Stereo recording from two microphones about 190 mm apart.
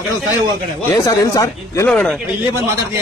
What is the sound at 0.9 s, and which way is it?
Speech, 20° left (ahead or behind).